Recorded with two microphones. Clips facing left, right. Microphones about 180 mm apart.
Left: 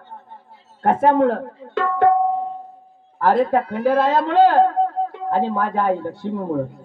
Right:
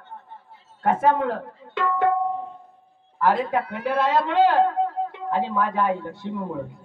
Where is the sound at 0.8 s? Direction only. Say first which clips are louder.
Left 5 dB; 50° left (ahead or behind).